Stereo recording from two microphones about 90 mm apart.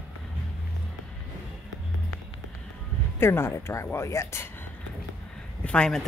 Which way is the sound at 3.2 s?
30° left (ahead or behind).